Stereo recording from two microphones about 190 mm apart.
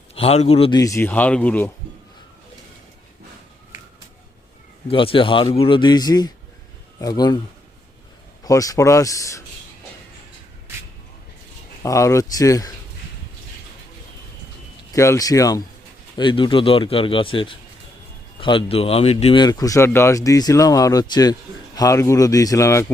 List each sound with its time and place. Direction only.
0.1 s a man's voice: 30° left (ahead or behind)
0.8 s speech: 15° left (ahead or behind)
4.9 s speech: 30° left (ahead or behind)
8.4 s speech: 20° left (ahead or behind)
11.8 s speech: 15° left (ahead or behind)
14.9 s speech: 15° left (ahead or behind)